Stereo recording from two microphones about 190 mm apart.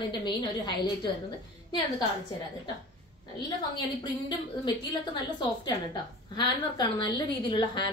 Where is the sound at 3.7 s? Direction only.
25° left (ahead or behind).